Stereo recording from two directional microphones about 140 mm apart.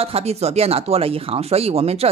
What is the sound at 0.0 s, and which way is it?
Speech, 45° right (ahead or behind).